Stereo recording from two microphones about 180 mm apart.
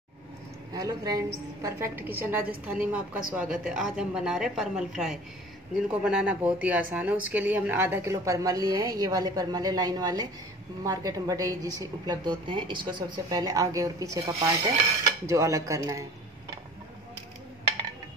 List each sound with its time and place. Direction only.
0.7 s a woman's voice: 20° right (ahead or behind)